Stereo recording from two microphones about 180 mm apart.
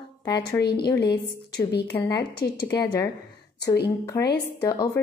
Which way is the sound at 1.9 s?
20° left (ahead or behind).